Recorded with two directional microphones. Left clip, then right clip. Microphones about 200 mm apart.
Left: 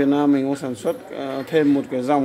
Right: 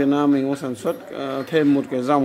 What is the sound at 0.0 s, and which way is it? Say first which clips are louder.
Speech: even; centre (ahead or behind).